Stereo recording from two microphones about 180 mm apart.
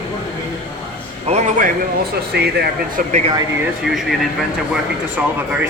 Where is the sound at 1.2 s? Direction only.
40° right (ahead or behind).